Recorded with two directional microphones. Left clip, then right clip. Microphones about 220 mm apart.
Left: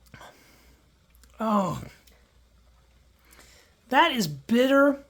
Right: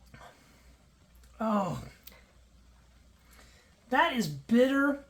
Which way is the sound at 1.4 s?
45° left (ahead or behind).